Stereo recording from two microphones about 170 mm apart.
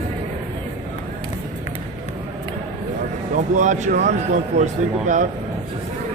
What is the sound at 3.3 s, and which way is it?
Speech, 45° right (ahead or behind).